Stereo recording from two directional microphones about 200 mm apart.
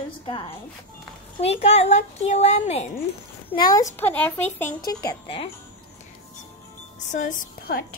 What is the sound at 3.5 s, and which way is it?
Speech, 20° left (ahead or behind).